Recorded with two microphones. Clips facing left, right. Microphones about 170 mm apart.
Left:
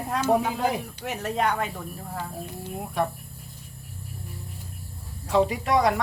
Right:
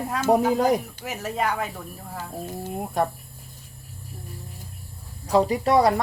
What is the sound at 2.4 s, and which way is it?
Speech, 45° right (ahead or behind).